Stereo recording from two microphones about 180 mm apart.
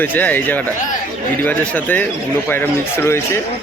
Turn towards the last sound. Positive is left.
turn(degrees=15)  # may be behind; listen again after turning